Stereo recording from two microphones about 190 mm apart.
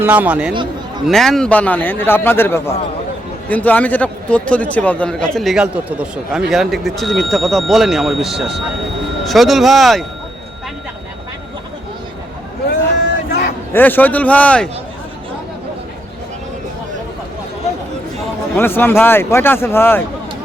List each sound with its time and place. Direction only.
0.0 s speech: 10° right (ahead or behind)
0.5 s a man's voice: 25° right (ahead or behind)
1.0 s a man's voice: centre (ahead or behind)
13.7 s a man's voice: 10° left (ahead or behind)
18.5 s a man's voice: 10° left (ahead or behind)